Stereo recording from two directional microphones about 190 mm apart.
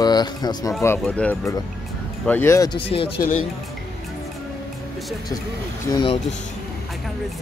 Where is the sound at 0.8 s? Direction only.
10° left (ahead or behind); by 3.1 s 30° left (ahead or behind).